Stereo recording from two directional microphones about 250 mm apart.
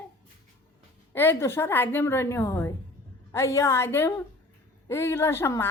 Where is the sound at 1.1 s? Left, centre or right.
Centre.